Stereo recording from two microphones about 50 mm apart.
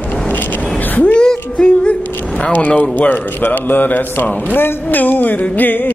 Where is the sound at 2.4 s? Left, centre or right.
Left.